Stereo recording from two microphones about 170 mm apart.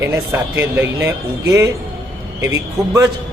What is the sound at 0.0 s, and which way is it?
A man's voice, 15° right (ahead or behind).